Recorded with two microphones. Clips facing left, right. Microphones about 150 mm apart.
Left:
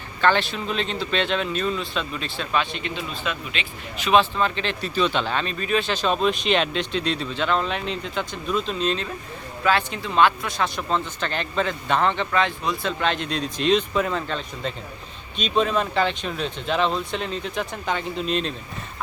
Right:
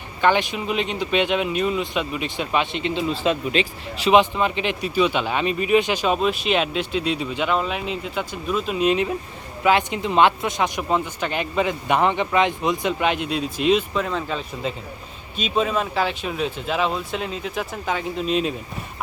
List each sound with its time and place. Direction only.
0.2 s speech: 15° right (ahead or behind); by 4.1 s 35° right (ahead or behind)
4.1 s speech: 15° right (ahead or behind)